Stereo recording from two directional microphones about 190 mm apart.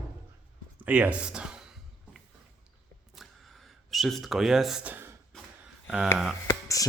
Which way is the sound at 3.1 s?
Centre (ahead or behind).